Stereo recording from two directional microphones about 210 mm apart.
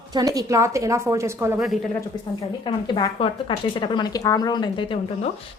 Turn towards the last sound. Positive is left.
turn(degrees=25)  # may be behind; listen again after turning